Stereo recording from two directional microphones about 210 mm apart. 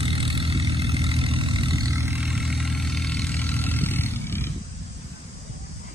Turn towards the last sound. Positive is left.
turn(degrees=10)  # may be behind; listen again after turning